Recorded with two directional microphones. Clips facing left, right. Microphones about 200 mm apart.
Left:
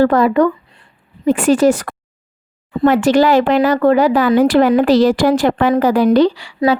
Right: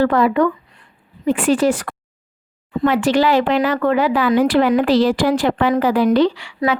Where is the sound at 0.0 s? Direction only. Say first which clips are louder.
Left 3 dB; 40° left (ahead or behind).